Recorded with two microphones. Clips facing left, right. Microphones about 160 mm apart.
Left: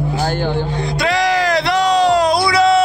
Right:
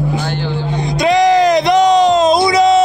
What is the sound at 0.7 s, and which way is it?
Music, 20° right (ahead or behind).